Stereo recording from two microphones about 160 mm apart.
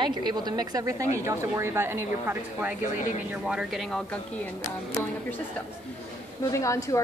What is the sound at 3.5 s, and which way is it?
Speech, 5° right (ahead or behind).